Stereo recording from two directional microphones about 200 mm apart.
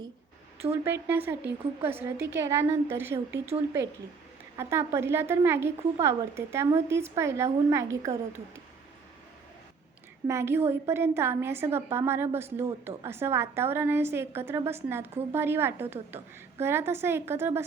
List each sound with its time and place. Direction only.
0.6 s a woman's voice: 10° right (ahead or behind)
4.5 s a woman's voice: 15° right (ahead or behind)
10.2 s a woman's voice: 10° right (ahead or behind)